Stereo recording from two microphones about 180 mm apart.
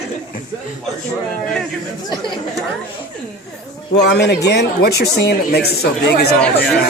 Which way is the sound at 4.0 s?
70° left (ahead or behind).